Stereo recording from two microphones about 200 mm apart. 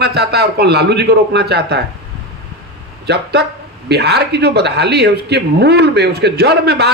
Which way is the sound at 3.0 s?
55° right (ahead or behind).